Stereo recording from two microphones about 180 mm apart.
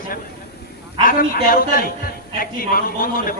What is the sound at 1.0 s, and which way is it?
A man's voice, 50° left (ahead or behind).